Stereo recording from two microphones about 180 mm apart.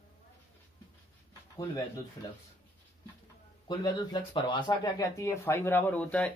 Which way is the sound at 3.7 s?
25° left (ahead or behind).